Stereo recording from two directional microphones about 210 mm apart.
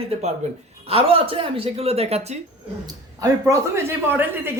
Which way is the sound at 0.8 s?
25° right (ahead or behind).